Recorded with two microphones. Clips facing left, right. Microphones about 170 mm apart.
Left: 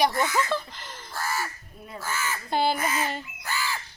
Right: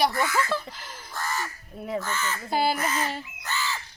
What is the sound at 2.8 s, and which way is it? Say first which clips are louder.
Speech: even; 10° left (ahead or behind).